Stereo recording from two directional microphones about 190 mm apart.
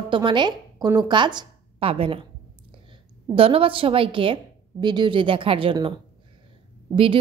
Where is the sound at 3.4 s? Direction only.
30° right (ahead or behind).